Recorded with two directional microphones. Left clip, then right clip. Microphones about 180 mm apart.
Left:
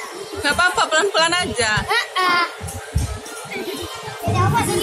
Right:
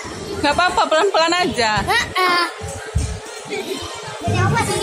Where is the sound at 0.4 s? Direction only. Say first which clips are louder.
Right 1 dB; 30° right (ahead or behind).